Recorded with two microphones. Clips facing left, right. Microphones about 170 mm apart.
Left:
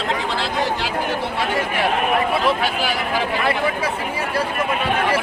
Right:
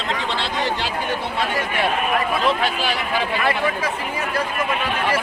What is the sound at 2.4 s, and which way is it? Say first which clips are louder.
Speech: left 1 dB; 10° left (ahead or behind).